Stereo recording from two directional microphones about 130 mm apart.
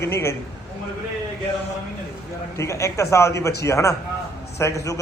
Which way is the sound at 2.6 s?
20° left (ahead or behind).